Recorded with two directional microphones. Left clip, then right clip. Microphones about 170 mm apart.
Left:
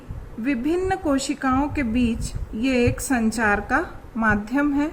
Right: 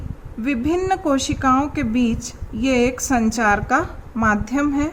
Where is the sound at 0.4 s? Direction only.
35° right (ahead or behind).